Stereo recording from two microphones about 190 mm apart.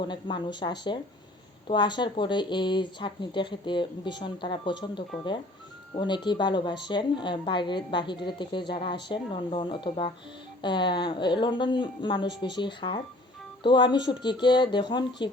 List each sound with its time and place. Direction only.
0.0 s a woman's voice: 25° left (ahead or behind)